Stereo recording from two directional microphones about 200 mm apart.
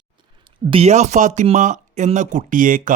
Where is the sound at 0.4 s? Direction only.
25° right (ahead or behind).